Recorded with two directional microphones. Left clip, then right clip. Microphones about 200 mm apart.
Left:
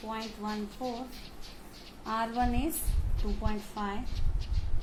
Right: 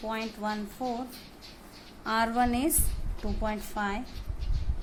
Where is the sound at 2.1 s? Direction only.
45° right (ahead or behind).